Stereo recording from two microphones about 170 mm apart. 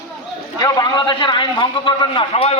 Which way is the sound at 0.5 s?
25° left (ahead or behind).